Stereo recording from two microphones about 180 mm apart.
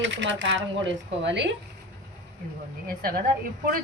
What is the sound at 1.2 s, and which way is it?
Speech, 75° right (ahead or behind).